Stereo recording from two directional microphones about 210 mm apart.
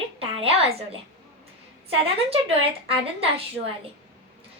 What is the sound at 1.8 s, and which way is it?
Speech, 30° right (ahead or behind).